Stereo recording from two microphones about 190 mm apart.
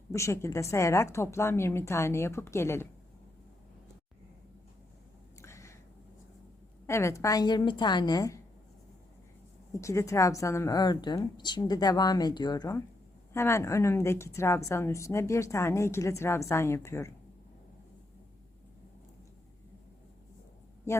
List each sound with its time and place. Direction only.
0.1 s a woman's voice: 15° left (ahead or behind)
5.4 s a sound: 15° left (ahead or behind)
6.8 s a woman's voice: 15° left (ahead or behind)
9.7 s a woman's voice: 15° left (ahead or behind)